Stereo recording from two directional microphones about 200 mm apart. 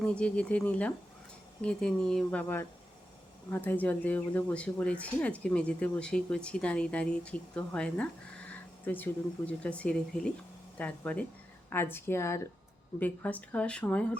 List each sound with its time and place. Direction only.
0.0 s speech: 5° left (ahead or behind)